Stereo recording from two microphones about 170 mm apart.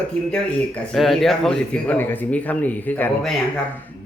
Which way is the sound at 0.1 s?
5° left (ahead or behind).